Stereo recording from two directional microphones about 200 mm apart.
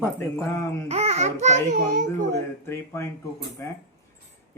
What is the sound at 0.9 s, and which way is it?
A child's voice, 35° right (ahead or behind).